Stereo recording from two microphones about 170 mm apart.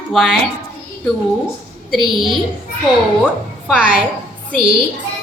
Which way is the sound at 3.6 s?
5° right (ahead or behind).